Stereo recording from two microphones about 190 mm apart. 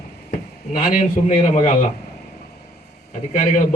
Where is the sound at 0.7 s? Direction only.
45° left (ahead or behind).